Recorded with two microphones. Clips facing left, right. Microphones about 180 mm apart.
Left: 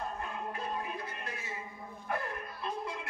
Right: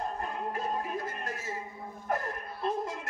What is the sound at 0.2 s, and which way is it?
Music, 40° right (ahead or behind).